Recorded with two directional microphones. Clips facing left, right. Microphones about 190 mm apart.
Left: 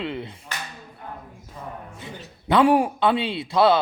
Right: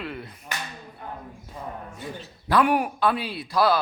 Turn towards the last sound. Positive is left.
turn(degrees=25)  # may be behind; listen again after turning